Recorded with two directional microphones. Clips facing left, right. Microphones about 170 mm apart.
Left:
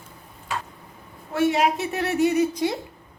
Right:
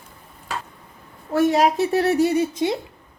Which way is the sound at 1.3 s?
40° right (ahead or behind).